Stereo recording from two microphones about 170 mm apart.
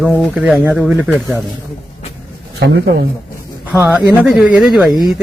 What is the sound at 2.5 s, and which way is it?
Speech, 75° right (ahead or behind).